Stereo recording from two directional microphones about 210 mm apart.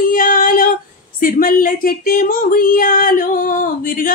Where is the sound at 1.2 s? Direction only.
40° left (ahead or behind).